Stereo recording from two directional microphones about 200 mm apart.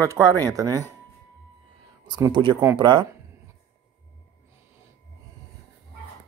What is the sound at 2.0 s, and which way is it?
Speech, 20° right (ahead or behind).